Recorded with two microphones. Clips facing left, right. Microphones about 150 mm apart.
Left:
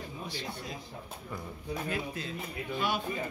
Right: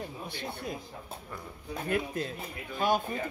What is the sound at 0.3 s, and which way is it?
Speech, 55° right (ahead or behind).